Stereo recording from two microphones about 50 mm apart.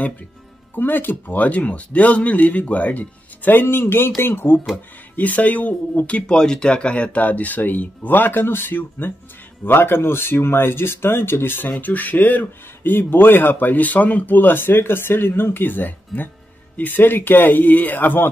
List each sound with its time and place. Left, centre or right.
0.7 s speech: left
3.6 s speech: left
5.1 s speech: left